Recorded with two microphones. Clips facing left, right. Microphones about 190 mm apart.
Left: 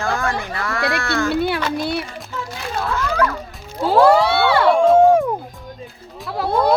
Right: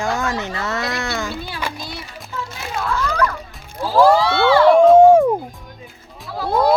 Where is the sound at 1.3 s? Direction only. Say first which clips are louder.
Left 8 dB; 65° left (ahead or behind).